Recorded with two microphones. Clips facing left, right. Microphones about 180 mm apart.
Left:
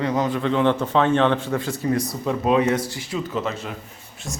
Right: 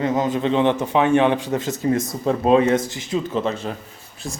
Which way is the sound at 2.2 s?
30° right (ahead or behind).